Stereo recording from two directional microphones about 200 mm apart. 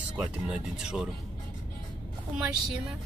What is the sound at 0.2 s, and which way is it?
Music, 5° right (ahead or behind).